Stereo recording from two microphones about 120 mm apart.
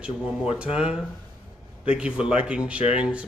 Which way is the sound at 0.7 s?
10° right (ahead or behind).